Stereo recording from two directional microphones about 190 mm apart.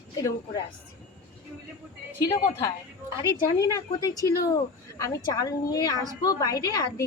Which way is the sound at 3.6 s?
20° left (ahead or behind).